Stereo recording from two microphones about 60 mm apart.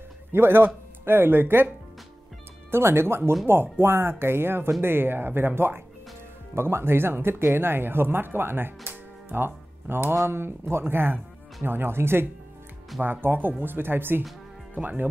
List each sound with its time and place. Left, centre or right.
0.3 s speech: right
2.7 s speech: right